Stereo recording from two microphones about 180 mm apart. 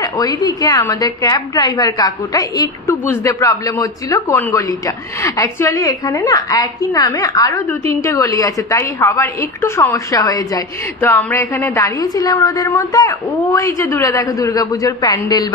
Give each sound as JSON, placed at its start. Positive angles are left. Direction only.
{"t": 0.0, "sound": "a woman's voice", "side_deg": 20}